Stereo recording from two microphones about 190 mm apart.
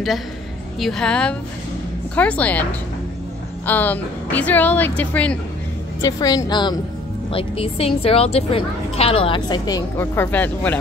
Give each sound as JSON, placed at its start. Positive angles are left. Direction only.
{"t": 0.7, "sound": "a woman's voice", "side_deg": 0}
{"t": 3.6, "sound": "a woman's voice", "side_deg": 10}
{"t": 5.9, "sound": "a woman's voice", "side_deg": 20}